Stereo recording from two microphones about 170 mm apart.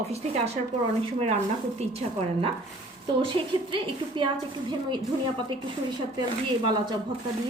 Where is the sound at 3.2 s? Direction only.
30° right (ahead or behind).